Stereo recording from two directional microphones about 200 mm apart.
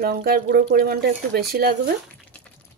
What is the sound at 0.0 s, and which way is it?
Speech, 50° right (ahead or behind).